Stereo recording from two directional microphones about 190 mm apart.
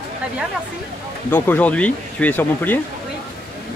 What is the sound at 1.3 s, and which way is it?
Speech, 10° left (ahead or behind).